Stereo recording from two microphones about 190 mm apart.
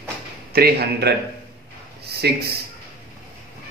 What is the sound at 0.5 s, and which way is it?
Speech, 55° right (ahead or behind).